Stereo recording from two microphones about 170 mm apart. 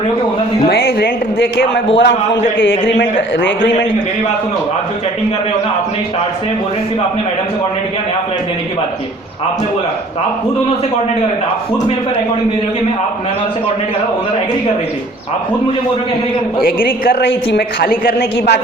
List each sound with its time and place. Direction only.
0.7 s a sound: 70° left (ahead or behind); by 1.8 s 90° left
2.0 s a man's voice: 90° left
16.6 s a woman's voice: 60° left (ahead or behind)